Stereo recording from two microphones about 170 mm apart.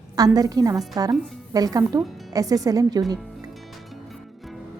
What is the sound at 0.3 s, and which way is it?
Speech, 20° right (ahead or behind).